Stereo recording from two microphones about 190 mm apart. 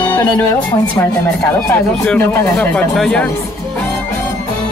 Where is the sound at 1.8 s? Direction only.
5° left (ahead or behind).